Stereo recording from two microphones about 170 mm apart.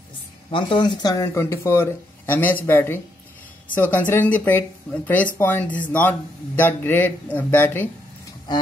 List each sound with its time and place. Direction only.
0.5 s speech: 30° left (ahead or behind); by 7.9 s 10° left (ahead or behind)
8.5 s speech: 25° left (ahead or behind)